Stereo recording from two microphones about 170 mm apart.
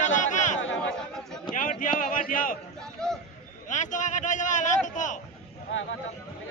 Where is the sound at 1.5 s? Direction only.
50° left (ahead or behind).